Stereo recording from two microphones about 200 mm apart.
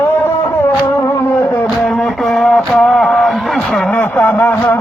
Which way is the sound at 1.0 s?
5° left (ahead or behind).